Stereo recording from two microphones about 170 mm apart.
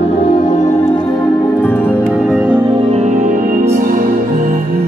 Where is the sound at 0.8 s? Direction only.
30° left (ahead or behind).